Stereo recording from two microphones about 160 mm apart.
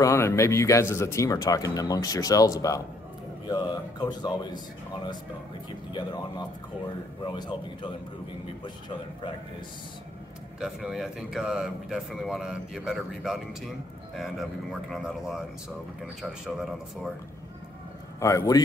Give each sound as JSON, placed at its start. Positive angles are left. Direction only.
{"t": 0.0, "sound": "speech", "side_deg": 15}
{"t": 5.9, "sound": "speech", "side_deg": 25}
{"t": 10.6, "sound": "speech", "side_deg": 0}
{"t": 18.2, "sound": "speech", "side_deg": 20}